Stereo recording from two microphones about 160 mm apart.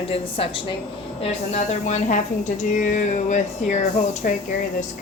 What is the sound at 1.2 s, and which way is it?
A woman's voice, 45° left (ahead or behind).